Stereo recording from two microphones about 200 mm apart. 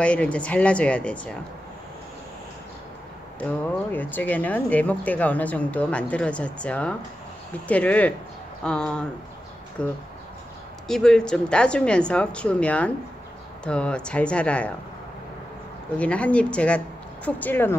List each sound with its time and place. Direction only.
0.0 s speech: 5° left (ahead or behind)
3.3 s speech: 10° left (ahead or behind)
16.0 s speech: 5° left (ahead or behind)